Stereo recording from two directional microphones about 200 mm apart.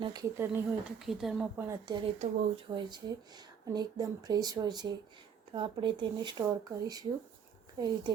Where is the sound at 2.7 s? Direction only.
20° right (ahead or behind).